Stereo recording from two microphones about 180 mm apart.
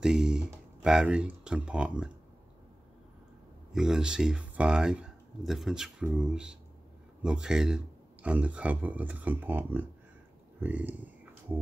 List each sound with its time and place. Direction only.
0.0 s speech: 5° right (ahead or behind)
3.7 s speech: 5° right (ahead or behind)